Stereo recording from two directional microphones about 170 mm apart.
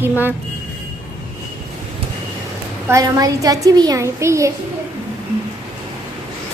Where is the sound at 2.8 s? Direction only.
20° right (ahead or behind).